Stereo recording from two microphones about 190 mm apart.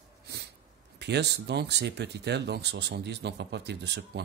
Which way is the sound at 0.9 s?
65° right (ahead or behind).